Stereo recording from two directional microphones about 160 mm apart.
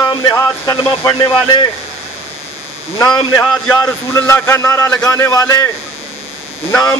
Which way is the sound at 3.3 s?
15° left (ahead or behind).